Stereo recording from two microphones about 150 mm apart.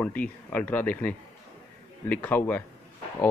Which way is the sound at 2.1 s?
10° left (ahead or behind).